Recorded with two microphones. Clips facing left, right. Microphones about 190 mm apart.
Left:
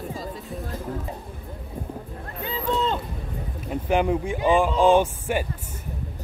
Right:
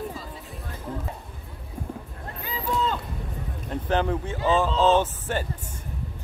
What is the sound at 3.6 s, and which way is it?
Speech, 10° left (ahead or behind).